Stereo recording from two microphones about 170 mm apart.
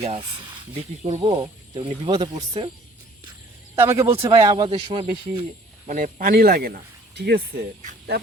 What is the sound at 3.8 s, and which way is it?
Speech, 15° right (ahead or behind).